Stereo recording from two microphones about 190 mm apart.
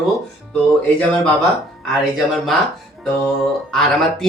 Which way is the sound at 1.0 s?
5° left (ahead or behind).